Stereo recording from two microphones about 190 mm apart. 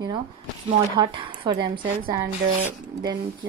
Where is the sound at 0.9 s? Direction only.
25° right (ahead or behind).